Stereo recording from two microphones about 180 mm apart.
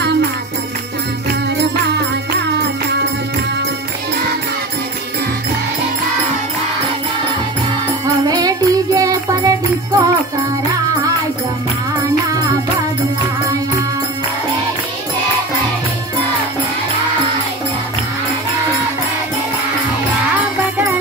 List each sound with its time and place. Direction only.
1.6 s music: 70° right (ahead or behind)
8.3 s music: 20° right (ahead or behind)
12.0 s music: 20° right (ahead or behind)
20.7 s music: 10° right (ahead or behind)